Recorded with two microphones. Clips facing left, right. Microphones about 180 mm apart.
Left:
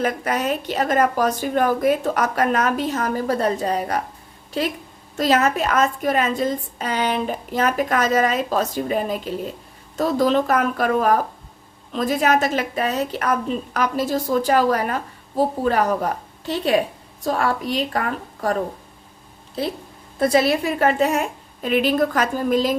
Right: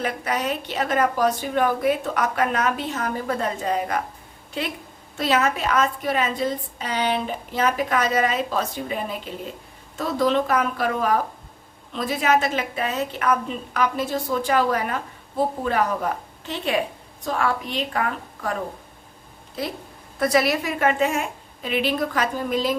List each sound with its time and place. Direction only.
0.0 s a woman's voice: 45° left (ahead or behind)
5.1 s a woman's voice: 40° left (ahead or behind)
19.6 s a woman's voice: 30° left (ahead or behind)